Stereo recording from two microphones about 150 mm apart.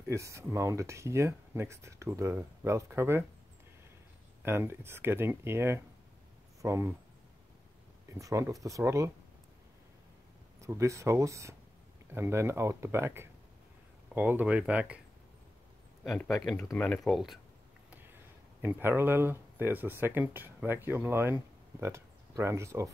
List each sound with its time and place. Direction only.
0.1 s speech: 20° right (ahead or behind)
4.5 s speech: 15° right (ahead or behind)
8.2 s speech: 20° right (ahead or behind)
10.6 s speech: 20° right (ahead or behind)
16.0 s speech: 5° left (ahead or behind)
18.6 s speech: 15° right (ahead or behind)